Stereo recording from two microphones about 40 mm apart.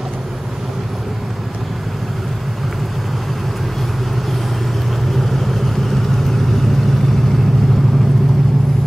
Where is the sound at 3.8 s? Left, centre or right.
Centre.